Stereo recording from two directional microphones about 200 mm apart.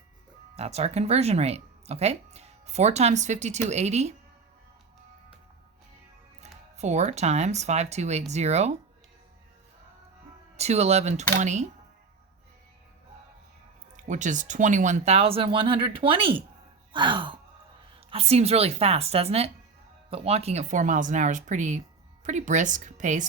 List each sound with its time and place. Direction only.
0.5 s speech: 30° right (ahead or behind)
6.4 s speech: 35° right (ahead or behind)
10.6 s speech: 30° right (ahead or behind)
13.9 s speech: 35° right (ahead or behind)
16.9 s gasp: 25° right (ahead or behind)
18.1 s speech: 30° right (ahead or behind)